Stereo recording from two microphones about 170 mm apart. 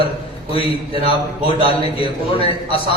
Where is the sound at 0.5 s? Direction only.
35° left (ahead or behind).